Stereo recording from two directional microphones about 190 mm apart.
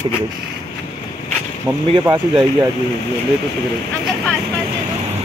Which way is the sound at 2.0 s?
15° right (ahead or behind).